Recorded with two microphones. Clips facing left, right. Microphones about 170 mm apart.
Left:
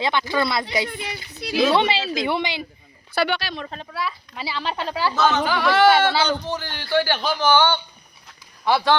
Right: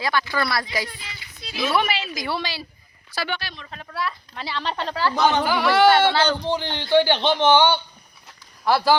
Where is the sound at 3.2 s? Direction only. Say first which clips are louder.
Left 6 dB; 85° left.